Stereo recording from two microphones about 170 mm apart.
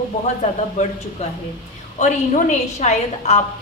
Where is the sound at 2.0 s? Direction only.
45° left (ahead or behind).